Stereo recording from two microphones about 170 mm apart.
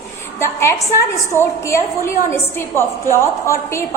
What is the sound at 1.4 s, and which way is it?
A woman's voice, 15° left (ahead or behind).